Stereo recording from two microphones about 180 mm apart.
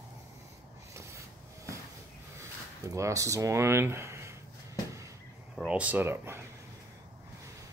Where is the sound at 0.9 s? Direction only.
15° right (ahead or behind).